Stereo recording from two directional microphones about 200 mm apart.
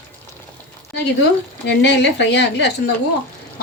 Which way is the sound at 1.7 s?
60° left (ahead or behind).